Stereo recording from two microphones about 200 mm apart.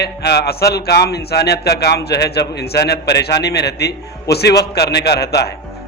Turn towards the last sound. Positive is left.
turn(degrees=55)  # may be behind; listen again after turning